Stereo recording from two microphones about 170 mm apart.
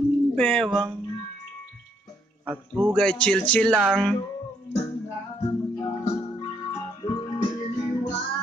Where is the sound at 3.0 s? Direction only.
5° left (ahead or behind).